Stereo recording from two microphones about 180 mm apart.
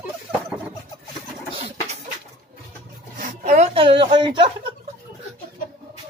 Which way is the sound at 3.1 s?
50° right (ahead or behind).